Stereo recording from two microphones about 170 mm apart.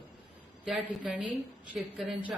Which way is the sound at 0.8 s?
10° left (ahead or behind).